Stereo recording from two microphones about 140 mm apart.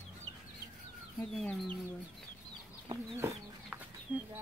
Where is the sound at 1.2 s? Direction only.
5° left (ahead or behind).